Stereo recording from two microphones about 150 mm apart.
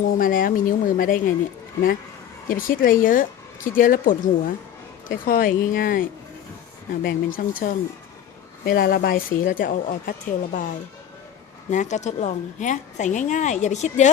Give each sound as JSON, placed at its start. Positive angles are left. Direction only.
{"t": 0.0, "sound": "speech", "side_deg": 65}
{"t": 2.5, "sound": "a woman's voice", "side_deg": 65}
{"t": 7.0, "sound": "a woman's voice", "side_deg": 80}
{"t": 8.6, "sound": "a woman's voice", "side_deg": 85}
{"t": 11.7, "sound": "speech", "side_deg": 55}